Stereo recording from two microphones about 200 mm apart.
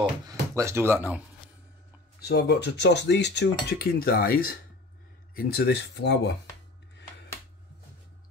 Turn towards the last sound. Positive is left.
turn(degrees=60)  # may be behind; listen again after turning